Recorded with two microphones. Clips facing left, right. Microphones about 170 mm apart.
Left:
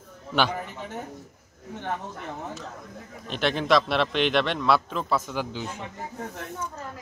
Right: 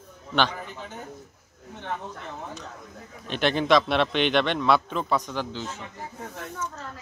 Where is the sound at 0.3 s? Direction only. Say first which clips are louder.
Even; 10° left (ahead or behind).